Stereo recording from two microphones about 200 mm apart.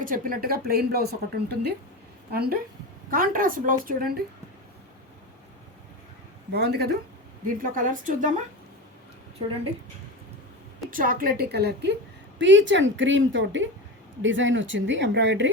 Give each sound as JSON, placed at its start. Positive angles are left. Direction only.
{"t": 0.0, "sound": "speech", "side_deg": -45}
{"t": 6.5, "sound": "speech", "side_deg": -55}
{"t": 7.4, "sound": "a woman's voice", "side_deg": -40}
{"t": 10.9, "sound": "speech", "side_deg": -45}